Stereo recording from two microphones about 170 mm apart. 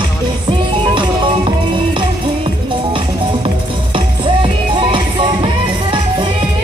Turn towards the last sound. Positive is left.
turn(degrees=-30)  # may be behind; listen again after turning